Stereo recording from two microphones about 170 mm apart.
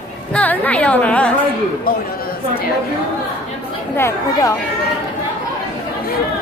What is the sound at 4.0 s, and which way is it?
Speech, 20° left (ahead or behind).